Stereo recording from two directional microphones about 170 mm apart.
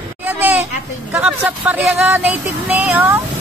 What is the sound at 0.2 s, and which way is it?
Children playing, 10° right (ahead or behind).